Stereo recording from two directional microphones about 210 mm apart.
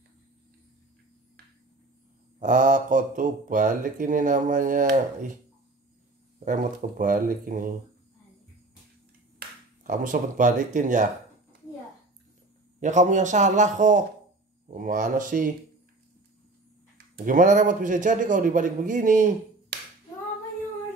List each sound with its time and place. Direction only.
2.4 s speech: 35° right (ahead or behind)
6.4 s speech: 40° right (ahead or behind)
9.8 s speech: 40° right (ahead or behind)
12.8 s speech: 35° right (ahead or behind)
17.1 s speech: 40° right (ahead or behind)